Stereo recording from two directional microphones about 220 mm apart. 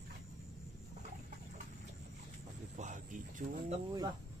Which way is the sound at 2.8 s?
35° right (ahead or behind).